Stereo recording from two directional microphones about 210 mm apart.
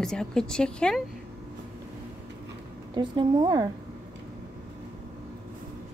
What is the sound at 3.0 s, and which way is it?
Speech, 20° right (ahead or behind).